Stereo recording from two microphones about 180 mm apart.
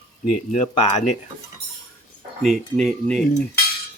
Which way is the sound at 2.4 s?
Centre (ahead or behind).